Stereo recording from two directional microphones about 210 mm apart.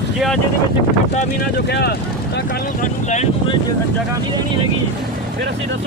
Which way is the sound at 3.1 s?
30° left (ahead or behind).